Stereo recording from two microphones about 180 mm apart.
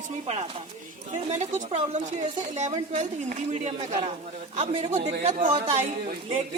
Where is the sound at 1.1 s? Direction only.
40° right (ahead or behind).